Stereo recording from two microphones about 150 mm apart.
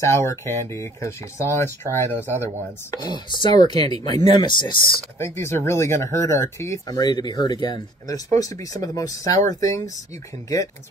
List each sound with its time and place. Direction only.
0.0 s speech: 15° left (ahead or behind)
2.9 s speech: 30° left (ahead or behind)
5.2 s speech: 15° left (ahead or behind)